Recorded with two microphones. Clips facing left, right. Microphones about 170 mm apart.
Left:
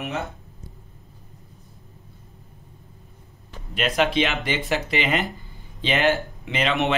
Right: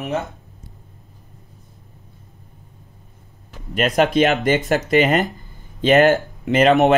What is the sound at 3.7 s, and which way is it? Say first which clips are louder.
Speech: right 5 dB; 40° right (ahead or behind).